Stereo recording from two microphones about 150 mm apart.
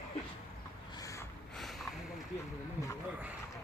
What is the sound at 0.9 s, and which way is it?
Snort, 20° left (ahead or behind).